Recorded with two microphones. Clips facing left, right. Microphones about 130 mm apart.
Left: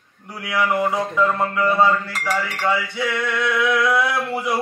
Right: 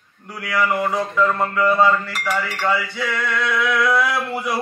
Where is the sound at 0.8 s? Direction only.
15° left (ahead or behind).